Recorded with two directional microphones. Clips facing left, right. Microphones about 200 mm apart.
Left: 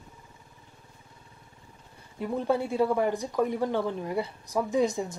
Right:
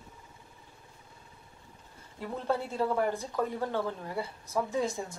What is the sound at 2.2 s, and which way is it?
Speech, 15° left (ahead or behind).